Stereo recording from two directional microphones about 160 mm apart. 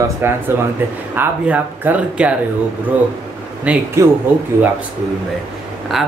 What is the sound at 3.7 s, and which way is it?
Speech, 10° right (ahead or behind).